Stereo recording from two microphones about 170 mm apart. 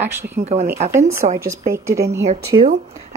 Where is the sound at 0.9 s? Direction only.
15° right (ahead or behind).